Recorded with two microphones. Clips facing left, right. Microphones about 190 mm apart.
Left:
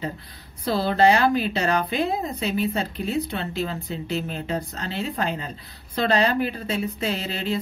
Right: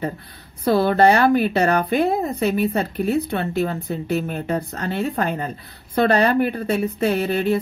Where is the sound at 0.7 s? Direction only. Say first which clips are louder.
Right 4 dB; 55° right (ahead or behind).